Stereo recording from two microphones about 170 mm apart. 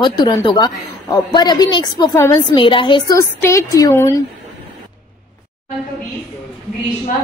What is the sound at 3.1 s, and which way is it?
A woman's voice, 15° left (ahead or behind).